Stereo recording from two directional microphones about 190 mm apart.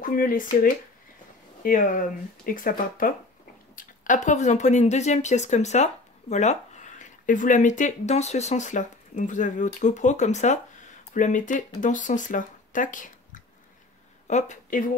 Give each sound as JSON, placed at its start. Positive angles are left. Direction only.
{"t": 0.0, "sound": "speech", "side_deg": 45}
{"t": 1.6, "sound": "speech", "side_deg": 45}